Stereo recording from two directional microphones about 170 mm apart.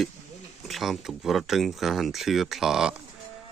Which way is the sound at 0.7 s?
Centre (ahead or behind).